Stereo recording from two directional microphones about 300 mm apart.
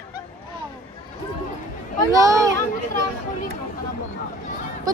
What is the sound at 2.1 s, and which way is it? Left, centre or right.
Speech, centre.